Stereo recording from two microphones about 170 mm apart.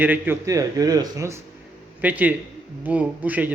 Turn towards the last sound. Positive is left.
turn(degrees=-10)  # may be behind; listen again after turning